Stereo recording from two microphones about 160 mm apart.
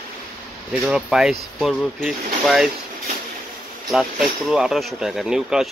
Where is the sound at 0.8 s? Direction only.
5° right (ahead or behind).